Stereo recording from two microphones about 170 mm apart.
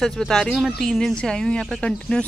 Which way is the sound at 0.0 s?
Centre (ahead or behind).